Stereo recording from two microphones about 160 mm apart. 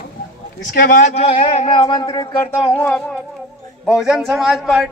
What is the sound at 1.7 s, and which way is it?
Speech, 30° left (ahead or behind).